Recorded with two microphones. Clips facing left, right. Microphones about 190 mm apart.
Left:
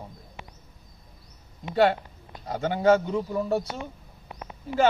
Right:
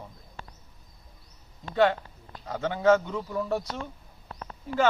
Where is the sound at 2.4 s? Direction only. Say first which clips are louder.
Left 1 dB; 35° left (ahead or behind).